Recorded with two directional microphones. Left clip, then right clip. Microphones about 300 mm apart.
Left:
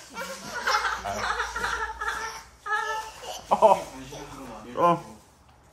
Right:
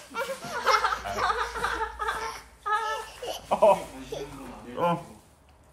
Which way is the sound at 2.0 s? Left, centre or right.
Centre.